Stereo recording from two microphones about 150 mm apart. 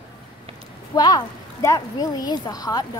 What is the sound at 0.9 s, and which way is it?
A woman's voice, 25° left (ahead or behind).